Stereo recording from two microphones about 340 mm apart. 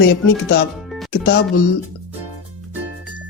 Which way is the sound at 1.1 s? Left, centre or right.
Left.